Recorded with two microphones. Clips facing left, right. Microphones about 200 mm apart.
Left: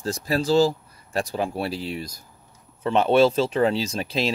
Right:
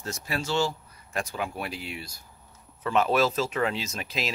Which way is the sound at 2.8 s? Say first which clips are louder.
Left 6 dB; 30° left (ahead or behind).